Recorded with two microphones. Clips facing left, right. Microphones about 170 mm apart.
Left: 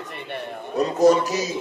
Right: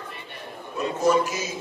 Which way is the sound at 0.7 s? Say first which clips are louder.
Left 5 dB; 35° left (ahead or behind).